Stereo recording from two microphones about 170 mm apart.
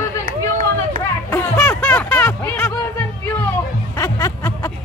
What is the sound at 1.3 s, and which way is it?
Music, 10° left (ahead or behind).